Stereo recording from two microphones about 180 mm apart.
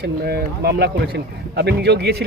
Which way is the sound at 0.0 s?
60° right (ahead or behind).